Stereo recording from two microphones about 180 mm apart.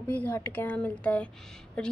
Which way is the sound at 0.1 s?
10° left (ahead or behind).